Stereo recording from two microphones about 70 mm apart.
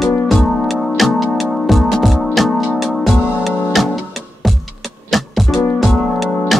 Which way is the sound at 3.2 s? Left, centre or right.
Right.